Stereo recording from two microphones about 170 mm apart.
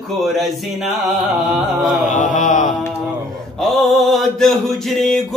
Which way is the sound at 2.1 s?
50° left (ahead or behind).